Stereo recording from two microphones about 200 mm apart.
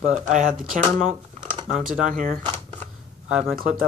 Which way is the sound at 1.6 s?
40° right (ahead or behind).